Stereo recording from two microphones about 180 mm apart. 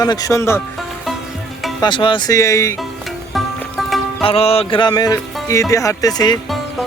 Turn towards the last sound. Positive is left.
turn(degrees=20)  # may be behind; listen again after turning